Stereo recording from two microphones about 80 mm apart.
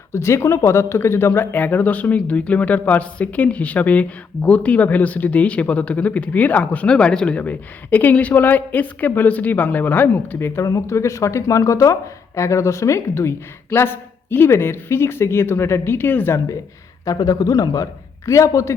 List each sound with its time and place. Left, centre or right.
0.1 s speech: left
10.7 s a woman's voice: left
17.1 s a man's voice: left
18.3 s a woman's voice: left